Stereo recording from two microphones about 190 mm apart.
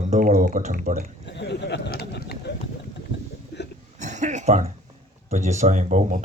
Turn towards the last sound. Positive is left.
turn(degrees=-40)  # may be behind; listen again after turning